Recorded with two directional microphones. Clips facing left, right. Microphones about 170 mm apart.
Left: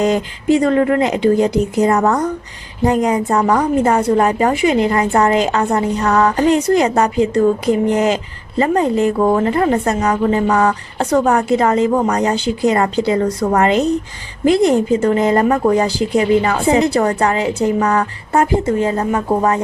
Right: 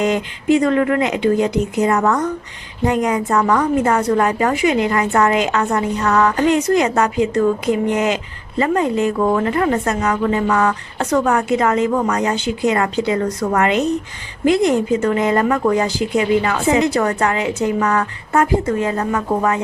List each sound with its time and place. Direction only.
0.0 s a woman's voice: 35° left (ahead or behind)